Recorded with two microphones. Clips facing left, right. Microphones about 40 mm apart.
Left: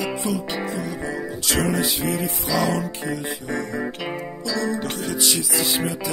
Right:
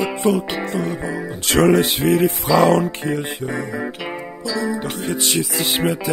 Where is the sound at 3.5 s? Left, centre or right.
Centre.